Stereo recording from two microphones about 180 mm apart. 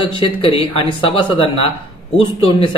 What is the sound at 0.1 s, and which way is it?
Speech, 30° left (ahead or behind).